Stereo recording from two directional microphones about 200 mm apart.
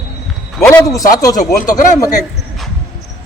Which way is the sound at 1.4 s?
40° left (ahead or behind).